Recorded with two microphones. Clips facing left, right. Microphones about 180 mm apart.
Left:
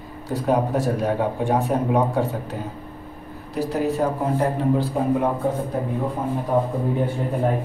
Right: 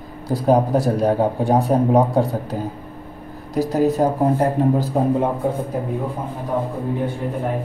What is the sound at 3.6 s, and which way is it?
Speech, 40° right (ahead or behind).